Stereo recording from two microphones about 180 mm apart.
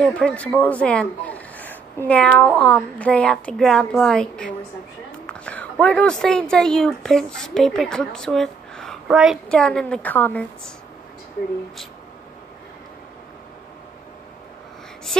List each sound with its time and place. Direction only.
0.0 s a woman's voice: 5° left (ahead or behind)